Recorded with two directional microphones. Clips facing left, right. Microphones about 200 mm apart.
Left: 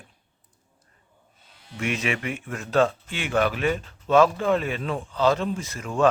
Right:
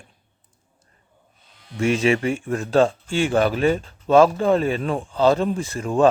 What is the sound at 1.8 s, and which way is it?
A man's voice, 30° right (ahead or behind).